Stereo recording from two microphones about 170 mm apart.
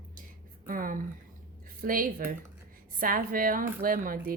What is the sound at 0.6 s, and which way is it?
A woman's voice, 55° right (ahead or behind).